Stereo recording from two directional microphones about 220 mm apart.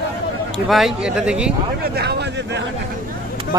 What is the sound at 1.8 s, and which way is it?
Speech, 45° right (ahead or behind).